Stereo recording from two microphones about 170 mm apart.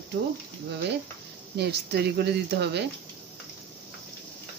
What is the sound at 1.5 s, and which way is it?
Speech, 75° right (ahead or behind).